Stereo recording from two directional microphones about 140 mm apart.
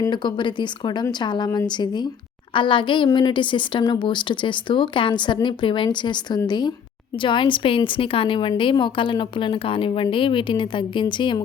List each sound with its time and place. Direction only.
0.1 s a woman's voice: 35° left (ahead or behind)